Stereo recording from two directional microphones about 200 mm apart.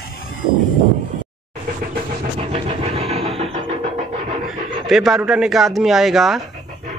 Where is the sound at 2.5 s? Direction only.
30° right (ahead or behind).